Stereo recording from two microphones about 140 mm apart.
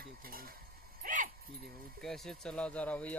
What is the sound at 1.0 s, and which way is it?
Dog, 75° right (ahead or behind).